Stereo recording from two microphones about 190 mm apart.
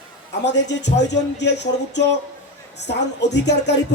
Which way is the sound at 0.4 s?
65° left (ahead or behind).